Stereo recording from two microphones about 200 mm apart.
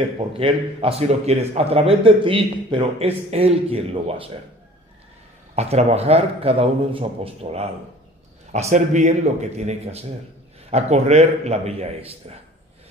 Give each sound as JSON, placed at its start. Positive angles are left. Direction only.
{"t": 0.4, "sound": "a man's voice", "side_deg": -30}
{"t": 5.6, "sound": "a man's voice", "side_deg": -30}